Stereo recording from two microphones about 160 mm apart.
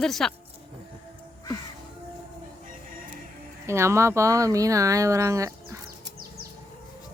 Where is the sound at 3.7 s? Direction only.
15° right (ahead or behind).